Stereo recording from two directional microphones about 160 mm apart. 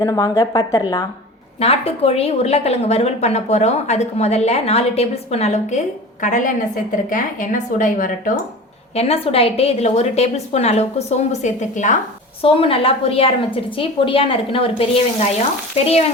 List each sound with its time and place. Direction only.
0.0 s a woman's voice: 20° left (ahead or behind)
1.5 s a woman's voice: 40° left (ahead or behind); by 8.3 s 55° left (ahead or behind)
9.0 s a woman's voice: 40° left (ahead or behind)
12.4 s a woman's voice: 35° left (ahead or behind)